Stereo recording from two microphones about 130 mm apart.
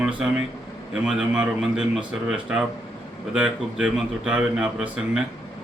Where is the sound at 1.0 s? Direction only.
5° right (ahead or behind).